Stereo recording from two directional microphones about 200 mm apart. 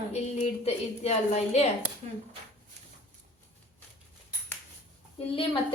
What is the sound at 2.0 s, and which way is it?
Speech, 35° right (ahead or behind).